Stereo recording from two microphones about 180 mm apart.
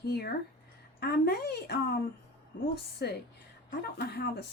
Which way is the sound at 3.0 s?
60° left (ahead or behind).